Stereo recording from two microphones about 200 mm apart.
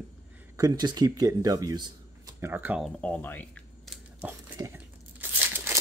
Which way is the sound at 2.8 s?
5° left (ahead or behind).